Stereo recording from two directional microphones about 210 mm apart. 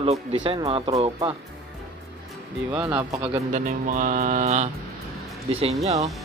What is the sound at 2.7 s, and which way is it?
Speech, 10° right (ahead or behind).